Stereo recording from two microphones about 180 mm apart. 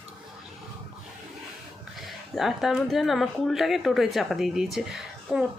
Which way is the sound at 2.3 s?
Centre (ahead or behind).